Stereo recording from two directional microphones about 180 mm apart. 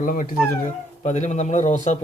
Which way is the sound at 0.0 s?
50° left (ahead or behind).